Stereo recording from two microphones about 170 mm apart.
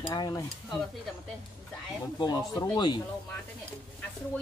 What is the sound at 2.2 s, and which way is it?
Speech, 25° left (ahead or behind).